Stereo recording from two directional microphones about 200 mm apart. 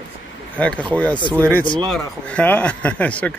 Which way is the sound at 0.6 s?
5° left (ahead or behind).